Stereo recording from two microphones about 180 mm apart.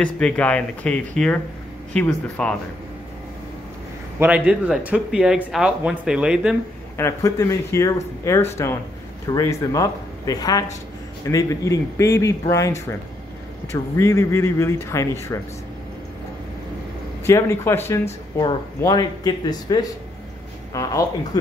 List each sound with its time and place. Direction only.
0.0 s speech: 5° left (ahead or behind)
4.2 s speech: 5° right (ahead or behind)
7.0 s speech: 15° left (ahead or behind)
17.3 s speech: 15° left (ahead or behind)